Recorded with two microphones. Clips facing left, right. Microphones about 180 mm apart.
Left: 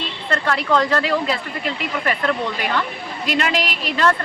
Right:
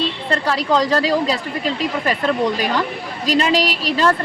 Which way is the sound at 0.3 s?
35° right (ahead or behind).